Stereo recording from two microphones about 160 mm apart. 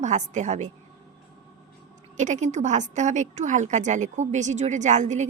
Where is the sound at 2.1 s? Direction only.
50° right (ahead or behind).